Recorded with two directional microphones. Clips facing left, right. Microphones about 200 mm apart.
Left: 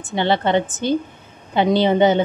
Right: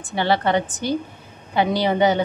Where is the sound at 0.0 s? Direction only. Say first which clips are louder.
Left 1 dB; 20° left (ahead or behind).